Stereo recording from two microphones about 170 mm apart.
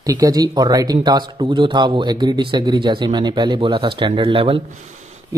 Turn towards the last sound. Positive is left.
turn(degrees=-30)  # may be behind; listen again after turning